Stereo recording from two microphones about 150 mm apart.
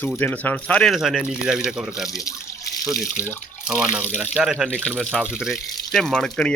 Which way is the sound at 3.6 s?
5° right (ahead or behind).